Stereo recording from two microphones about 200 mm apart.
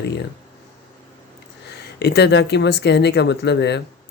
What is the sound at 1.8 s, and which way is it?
Speech, 55° left (ahead or behind).